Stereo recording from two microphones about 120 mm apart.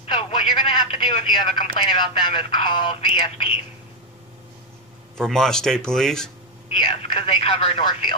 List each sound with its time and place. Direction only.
0.0 s speech: 50° left (ahead or behind)
5.1 s speech: 5° left (ahead or behind)
6.8 s speech: 45° left (ahead or behind)